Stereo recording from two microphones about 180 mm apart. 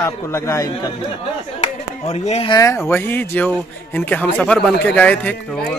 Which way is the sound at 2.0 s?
35° left (ahead or behind).